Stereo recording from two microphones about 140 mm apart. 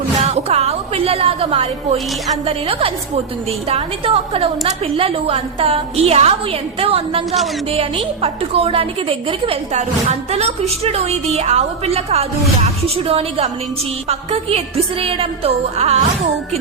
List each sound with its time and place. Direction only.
0.3 s a woman's voice: 50° right (ahead or behind)